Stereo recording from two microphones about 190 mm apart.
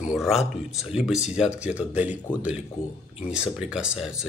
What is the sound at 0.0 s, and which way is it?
Speech, centre (ahead or behind).